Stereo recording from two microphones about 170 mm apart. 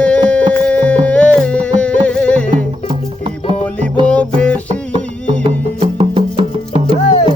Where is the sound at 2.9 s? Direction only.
30° right (ahead or behind).